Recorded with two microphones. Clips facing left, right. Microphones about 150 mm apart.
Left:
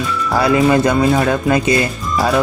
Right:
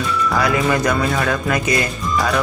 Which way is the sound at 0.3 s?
30° left (ahead or behind).